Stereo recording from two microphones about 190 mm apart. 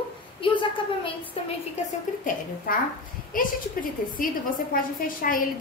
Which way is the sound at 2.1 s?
40° left (ahead or behind).